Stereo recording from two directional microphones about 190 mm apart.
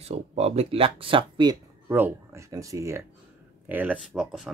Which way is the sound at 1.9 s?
10° right (ahead or behind).